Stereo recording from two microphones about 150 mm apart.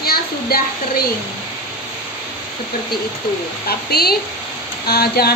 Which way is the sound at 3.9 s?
90° left.